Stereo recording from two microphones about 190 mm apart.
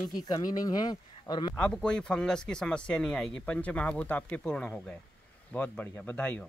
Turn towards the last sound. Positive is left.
turn(degrees=10)  # may be behind; listen again after turning